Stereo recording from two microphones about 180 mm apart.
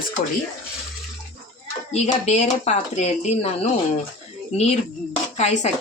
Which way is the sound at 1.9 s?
40° left (ahead or behind).